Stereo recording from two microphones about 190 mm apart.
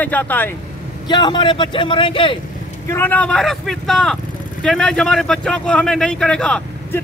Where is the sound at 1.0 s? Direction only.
25° left (ahead or behind).